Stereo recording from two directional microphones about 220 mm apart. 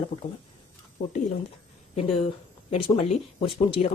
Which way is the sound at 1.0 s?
40° left (ahead or behind).